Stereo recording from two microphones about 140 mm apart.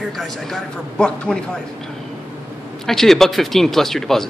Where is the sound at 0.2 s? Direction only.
5° left (ahead or behind).